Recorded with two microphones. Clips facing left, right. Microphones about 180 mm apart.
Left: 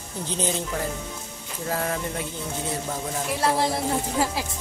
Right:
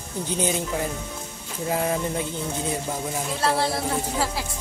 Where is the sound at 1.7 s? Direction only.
20° right (ahead or behind).